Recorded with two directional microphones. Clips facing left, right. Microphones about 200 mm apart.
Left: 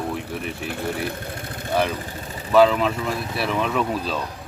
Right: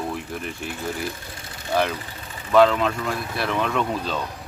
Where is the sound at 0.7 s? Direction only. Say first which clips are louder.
Left 3 dB; 60° left (ahead or behind).